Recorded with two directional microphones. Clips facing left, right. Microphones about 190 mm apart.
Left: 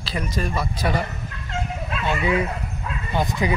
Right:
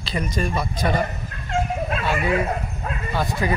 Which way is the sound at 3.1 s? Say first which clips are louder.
Left 1 dB; 20° left (ahead or behind).